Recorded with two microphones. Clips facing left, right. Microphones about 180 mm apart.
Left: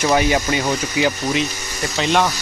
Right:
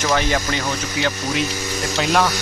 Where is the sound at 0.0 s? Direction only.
15° left (ahead or behind).